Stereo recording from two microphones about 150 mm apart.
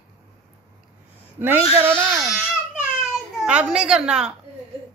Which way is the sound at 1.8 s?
15° right (ahead or behind).